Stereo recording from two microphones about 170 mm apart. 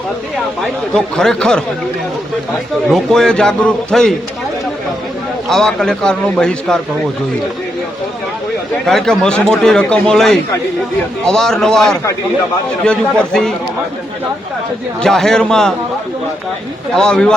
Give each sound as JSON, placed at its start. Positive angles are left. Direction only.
{"t": 0.6, "sound": "a man's voice", "side_deg": 5}
{"t": 2.9, "sound": "a man's voice", "side_deg": 5}
{"t": 5.5, "sound": "a man's voice", "side_deg": 5}
{"t": 8.9, "sound": "a man's voice", "side_deg": 5}
{"t": 15.0, "sound": "a man's voice", "side_deg": 5}
{"t": 16.9, "sound": "a man's voice", "side_deg": 5}